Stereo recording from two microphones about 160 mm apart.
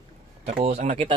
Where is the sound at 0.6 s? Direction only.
40° right (ahead or behind).